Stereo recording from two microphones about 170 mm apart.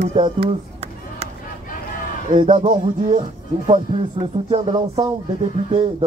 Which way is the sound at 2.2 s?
40° right (ahead or behind).